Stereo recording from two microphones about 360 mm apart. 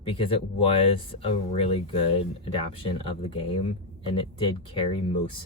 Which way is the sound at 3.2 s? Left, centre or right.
Centre.